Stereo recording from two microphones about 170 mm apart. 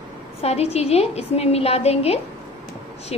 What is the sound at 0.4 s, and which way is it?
A woman's voice, 35° left (ahead or behind).